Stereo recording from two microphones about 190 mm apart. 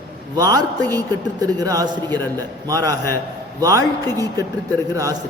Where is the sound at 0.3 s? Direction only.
20° right (ahead or behind).